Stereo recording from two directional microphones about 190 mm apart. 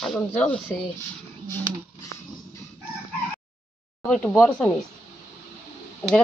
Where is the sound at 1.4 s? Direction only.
15° left (ahead or behind).